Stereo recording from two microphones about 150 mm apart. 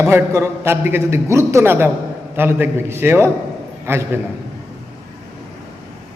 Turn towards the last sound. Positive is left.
turn(degrees=-15)  # may be behind; listen again after turning